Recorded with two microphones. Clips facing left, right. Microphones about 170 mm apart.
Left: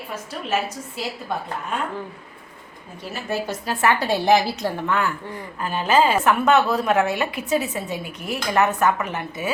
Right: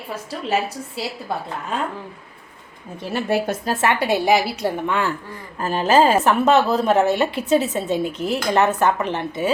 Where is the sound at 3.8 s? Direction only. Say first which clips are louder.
Left 1 dB; 20° right (ahead or behind).